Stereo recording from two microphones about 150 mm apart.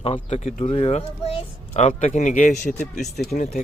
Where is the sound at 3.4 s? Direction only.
65° left (ahead or behind).